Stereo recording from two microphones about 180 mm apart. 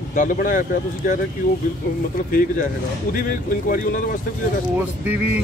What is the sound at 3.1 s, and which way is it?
Speech, 50° left (ahead or behind).